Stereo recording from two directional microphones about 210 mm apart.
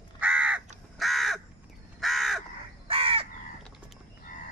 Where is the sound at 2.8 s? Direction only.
25° right (ahead or behind).